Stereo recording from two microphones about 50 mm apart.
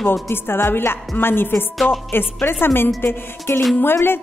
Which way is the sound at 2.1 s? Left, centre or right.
Left.